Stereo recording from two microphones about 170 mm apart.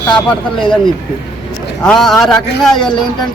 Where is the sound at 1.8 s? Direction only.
Centre (ahead or behind).